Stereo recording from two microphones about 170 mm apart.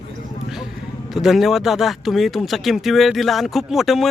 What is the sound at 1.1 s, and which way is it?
Speech, centre (ahead or behind).